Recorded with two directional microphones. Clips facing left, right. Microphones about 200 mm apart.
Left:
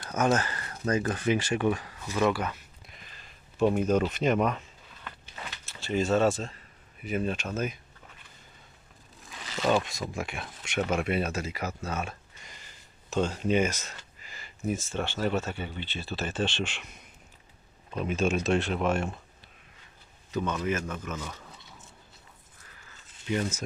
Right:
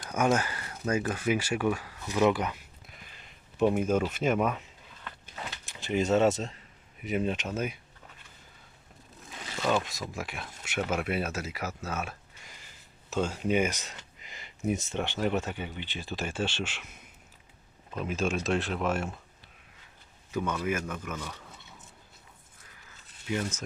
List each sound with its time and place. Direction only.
0.1 s speech: 10° right (ahead or behind)
3.6 s speech: 10° right (ahead or behind)
5.6 s speech: 15° right (ahead or behind)
10.1 s speech: centre (ahead or behind)
18.0 s speech: centre (ahead or behind)
20.3 s speech: 10° right (ahead or behind)
23.3 s speech: 10° left (ahead or behind)